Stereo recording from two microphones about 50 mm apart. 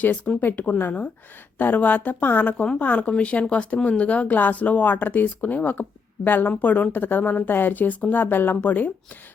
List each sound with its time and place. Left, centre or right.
0.3 s speech: centre
0.8 s speech: left